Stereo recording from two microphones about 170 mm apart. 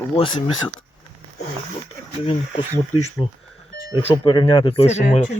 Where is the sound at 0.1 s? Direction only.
30° left (ahead or behind).